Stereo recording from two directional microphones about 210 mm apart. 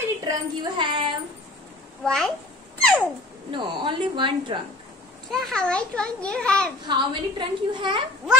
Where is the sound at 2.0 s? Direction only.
Centre (ahead or behind).